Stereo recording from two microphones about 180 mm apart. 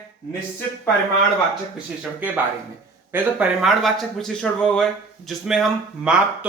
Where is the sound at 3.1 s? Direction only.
5° right (ahead or behind).